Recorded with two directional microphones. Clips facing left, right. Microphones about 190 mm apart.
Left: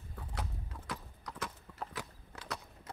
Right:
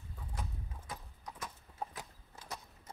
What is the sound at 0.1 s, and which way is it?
Horse, 75° left (ahead or behind).